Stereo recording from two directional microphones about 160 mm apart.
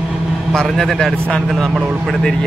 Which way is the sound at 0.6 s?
Centre (ahead or behind).